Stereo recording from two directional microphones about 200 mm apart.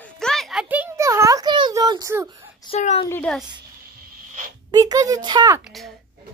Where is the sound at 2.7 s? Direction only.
30° left (ahead or behind).